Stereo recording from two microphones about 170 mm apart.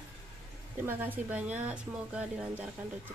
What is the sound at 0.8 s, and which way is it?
Speech, 10° right (ahead or behind).